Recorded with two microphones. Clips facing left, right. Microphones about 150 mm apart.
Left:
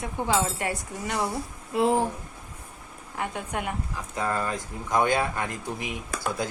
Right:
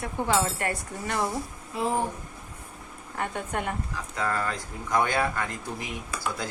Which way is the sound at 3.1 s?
10° left (ahead or behind).